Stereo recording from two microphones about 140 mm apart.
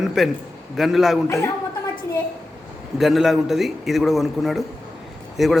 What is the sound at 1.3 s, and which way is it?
Speech, 20° left (ahead or behind).